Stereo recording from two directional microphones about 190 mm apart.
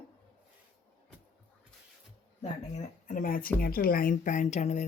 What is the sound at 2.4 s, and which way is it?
Speech, 40° left (ahead or behind).